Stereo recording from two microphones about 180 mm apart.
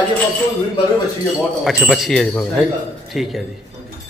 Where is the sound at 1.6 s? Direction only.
Centre (ahead or behind).